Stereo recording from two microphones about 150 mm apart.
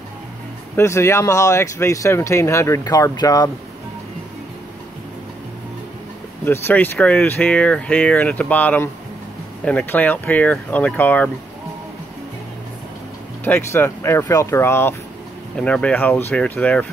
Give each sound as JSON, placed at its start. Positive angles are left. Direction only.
{"t": 0.7, "sound": "speech", "side_deg": 20}
{"t": 6.4, "sound": "speech", "side_deg": 15}
{"t": 13.4, "sound": "speech", "side_deg": 15}